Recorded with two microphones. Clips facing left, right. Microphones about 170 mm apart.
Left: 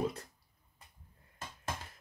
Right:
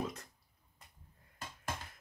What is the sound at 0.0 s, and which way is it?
Speech, 35° left (ahead or behind).